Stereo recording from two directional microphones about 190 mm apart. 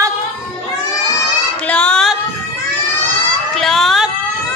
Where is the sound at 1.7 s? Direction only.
5° left (ahead or behind).